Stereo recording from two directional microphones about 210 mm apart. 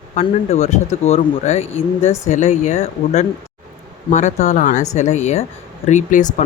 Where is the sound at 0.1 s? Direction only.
35° left (ahead or behind).